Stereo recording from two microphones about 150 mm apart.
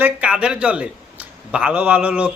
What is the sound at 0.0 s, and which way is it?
A man's voice, 5° right (ahead or behind).